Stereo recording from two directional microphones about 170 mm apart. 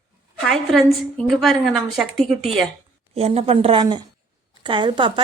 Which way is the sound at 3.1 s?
35° right (ahead or behind).